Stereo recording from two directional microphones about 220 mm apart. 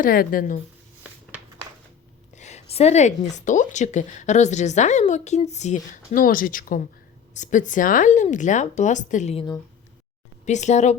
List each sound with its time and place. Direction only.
0.0 s speech: 40° left (ahead or behind)
1.3 s a sound: 5° right (ahead or behind)
2.3 s speech: 30° left (ahead or behind)